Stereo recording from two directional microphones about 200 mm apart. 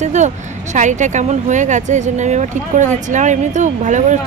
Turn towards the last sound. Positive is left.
turn(degrees=-35)  # may be behind; listen again after turning